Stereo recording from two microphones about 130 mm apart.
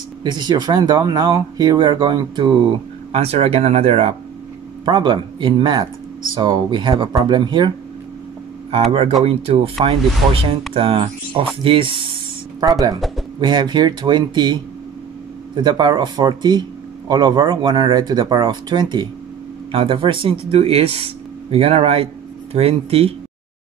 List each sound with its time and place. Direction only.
0.2 s speech: 35° right (ahead or behind); by 4.1 s 55° right (ahead or behind)
4.8 s speech: 40° right (ahead or behind)
9.2 s speech: 50° right (ahead or behind)
12.5 s speech: 30° right (ahead or behind); by 23.1 s 50° right (ahead or behind)